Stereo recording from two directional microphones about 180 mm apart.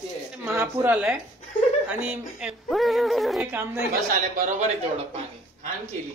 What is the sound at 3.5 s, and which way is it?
Speech, 10° right (ahead or behind).